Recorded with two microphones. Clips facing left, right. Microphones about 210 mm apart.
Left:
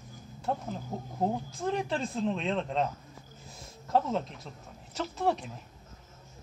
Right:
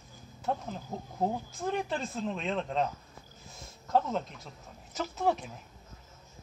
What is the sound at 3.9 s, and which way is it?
Speech, centre (ahead or behind).